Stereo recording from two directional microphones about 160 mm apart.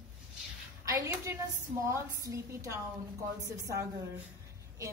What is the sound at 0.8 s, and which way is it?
A woman's voice, 15° right (ahead or behind).